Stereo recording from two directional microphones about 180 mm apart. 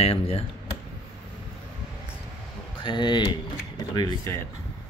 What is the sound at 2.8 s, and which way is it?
Speech, 25° left (ahead or behind).